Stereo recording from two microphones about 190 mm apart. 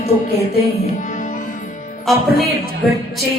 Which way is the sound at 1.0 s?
40° left (ahead or behind).